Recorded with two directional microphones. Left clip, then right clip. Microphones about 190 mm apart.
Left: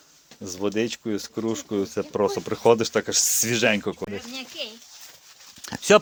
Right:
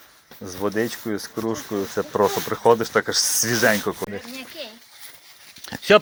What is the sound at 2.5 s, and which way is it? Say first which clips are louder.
Speech: left 2 dB; 30° left (ahead or behind).